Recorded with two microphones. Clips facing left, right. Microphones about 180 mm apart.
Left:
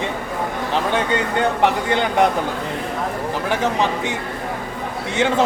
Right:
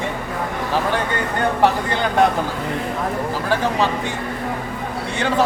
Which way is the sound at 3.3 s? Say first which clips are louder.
Left 2 dB; 20° left (ahead or behind).